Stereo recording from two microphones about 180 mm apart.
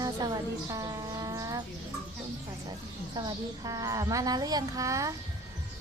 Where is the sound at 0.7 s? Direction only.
20° right (ahead or behind).